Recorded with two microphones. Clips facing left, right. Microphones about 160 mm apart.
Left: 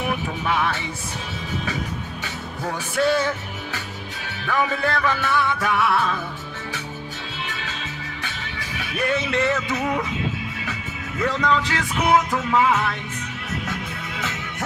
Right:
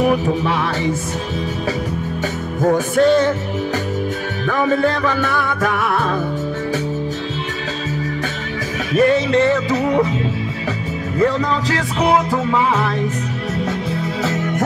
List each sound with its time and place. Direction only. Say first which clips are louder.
0.0 s music: right 10 dB; 35° right (ahead or behind)
2.6 s music: right 10 dB; 45° right (ahead or behind)
4.5 s music: right 6 dB; 40° right (ahead or behind)
8.9 s music: right 9 dB; 40° right (ahead or behind)
11.1 s music: right 4 dB; 40° right (ahead or behind)
13.9 s music: right 11 dB; 40° right (ahead or behind)